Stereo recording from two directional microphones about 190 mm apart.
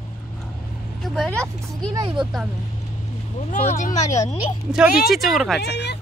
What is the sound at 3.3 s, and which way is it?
Speech, 35° left (ahead or behind).